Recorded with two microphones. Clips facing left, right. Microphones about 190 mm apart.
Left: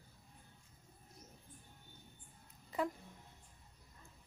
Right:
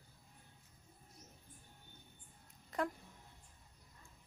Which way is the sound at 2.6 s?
5° left (ahead or behind).